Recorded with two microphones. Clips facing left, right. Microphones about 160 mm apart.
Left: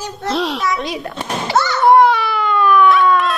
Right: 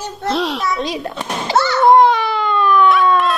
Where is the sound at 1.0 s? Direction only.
25° right (ahead or behind).